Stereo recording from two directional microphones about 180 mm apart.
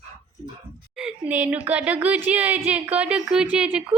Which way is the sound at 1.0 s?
5° right (ahead or behind).